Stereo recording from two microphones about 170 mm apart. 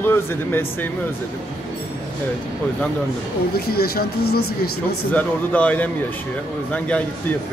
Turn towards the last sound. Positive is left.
turn(degrees=5)  # may be behind; listen again after turning